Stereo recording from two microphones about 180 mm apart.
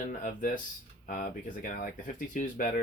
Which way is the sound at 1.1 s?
50° left (ahead or behind).